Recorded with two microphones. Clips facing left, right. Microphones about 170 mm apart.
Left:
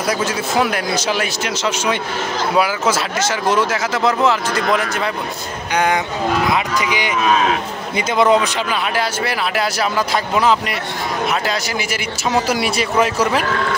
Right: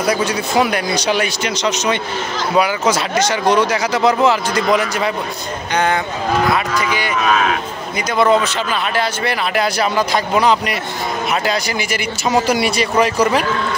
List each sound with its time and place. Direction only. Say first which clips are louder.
0.0 s speech: right 2 dB; centre (ahead or behind)
6.5 s speech: right 1 dB; 15° left (ahead or behind)
8.2 s speech: even; 15° left (ahead or behind)